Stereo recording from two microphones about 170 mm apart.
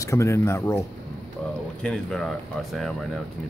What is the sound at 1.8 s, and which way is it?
Speech, 5° left (ahead or behind).